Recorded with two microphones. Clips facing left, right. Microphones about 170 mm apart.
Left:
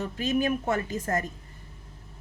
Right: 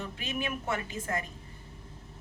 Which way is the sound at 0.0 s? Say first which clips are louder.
Left 9 dB; 40° left (ahead or behind).